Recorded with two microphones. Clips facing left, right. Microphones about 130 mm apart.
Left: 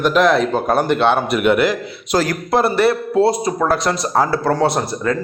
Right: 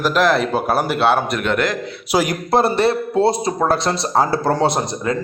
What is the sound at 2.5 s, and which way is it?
Speech, 25° right (ahead or behind).